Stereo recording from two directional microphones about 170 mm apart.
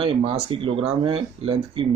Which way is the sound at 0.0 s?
35° right (ahead or behind).